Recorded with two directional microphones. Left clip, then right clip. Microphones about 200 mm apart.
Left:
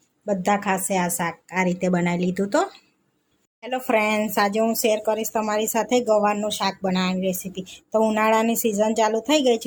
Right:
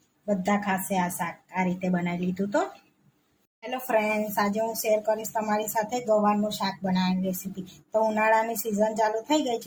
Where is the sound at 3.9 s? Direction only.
45° left (ahead or behind).